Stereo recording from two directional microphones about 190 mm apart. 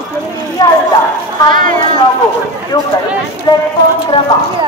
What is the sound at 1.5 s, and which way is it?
Speech, 45° right (ahead or behind).